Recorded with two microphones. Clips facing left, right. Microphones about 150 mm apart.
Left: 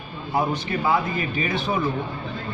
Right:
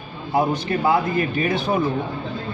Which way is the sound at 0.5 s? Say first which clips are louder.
Right 3 dB; 45° right (ahead or behind).